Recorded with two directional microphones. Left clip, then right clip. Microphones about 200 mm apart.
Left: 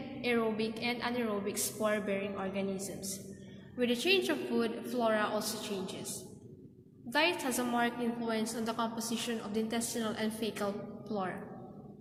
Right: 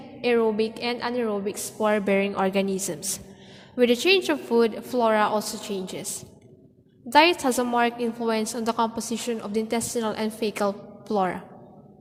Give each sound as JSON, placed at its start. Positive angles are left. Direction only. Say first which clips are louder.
{"t": 0.2, "sound": "a woman's voice", "louder": "right 11 dB", "side_deg": -40}
{"t": 7.1, "sound": "a woman's voice", "louder": "right 12 dB", "side_deg": -45}